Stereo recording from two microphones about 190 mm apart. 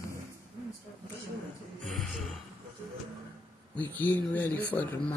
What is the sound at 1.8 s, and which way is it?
Gasp, centre (ahead or behind).